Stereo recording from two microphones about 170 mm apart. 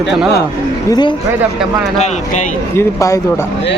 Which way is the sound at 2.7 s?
15° left (ahead or behind).